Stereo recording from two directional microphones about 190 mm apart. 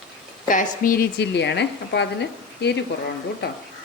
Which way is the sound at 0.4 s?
45° left (ahead or behind).